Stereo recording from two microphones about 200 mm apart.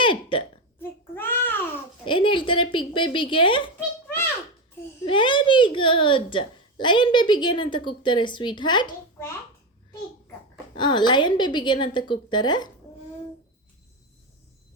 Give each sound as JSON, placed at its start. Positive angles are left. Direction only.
{"t": 0.0, "sound": "hiccup", "side_deg": 25}
{"t": 0.8, "sound": "babbling", "side_deg": 10}
{"t": 2.0, "sound": "speech", "side_deg": 25}
{"t": 5.0, "sound": "a woman's voice", "side_deg": 25}
{"t": 9.1, "sound": "a sound", "side_deg": 10}
{"t": 10.8, "sound": "a woman's voice", "side_deg": 20}